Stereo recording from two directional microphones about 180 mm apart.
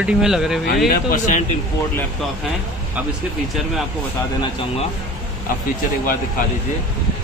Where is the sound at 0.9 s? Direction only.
50° left (ahead or behind).